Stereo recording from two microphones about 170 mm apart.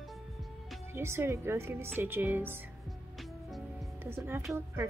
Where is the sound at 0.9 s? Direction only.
15° right (ahead or behind).